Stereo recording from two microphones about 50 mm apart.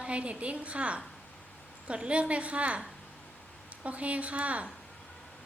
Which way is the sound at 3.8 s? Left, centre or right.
Right.